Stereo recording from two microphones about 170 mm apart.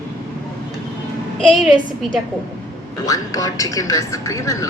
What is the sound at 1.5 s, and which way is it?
Speech, centre (ahead or behind).